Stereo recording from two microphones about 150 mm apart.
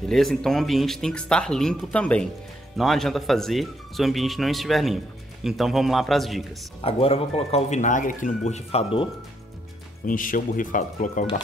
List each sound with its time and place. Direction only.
0.1 s speech: centre (ahead or behind)
6.8 s speech: 40° left (ahead or behind)
10.0 s speech: 65° left (ahead or behind)